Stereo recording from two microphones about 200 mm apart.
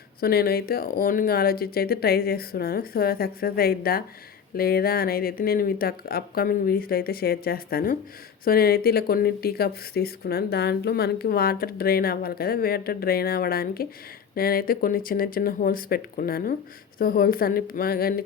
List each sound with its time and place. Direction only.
0.2 s speech: 50° left (ahead or behind)